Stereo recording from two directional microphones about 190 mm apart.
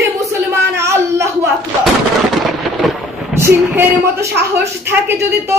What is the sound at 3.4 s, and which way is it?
A woman's voice, 15° right (ahead or behind).